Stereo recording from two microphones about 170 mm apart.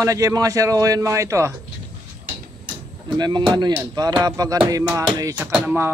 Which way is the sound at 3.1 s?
25° right (ahead or behind).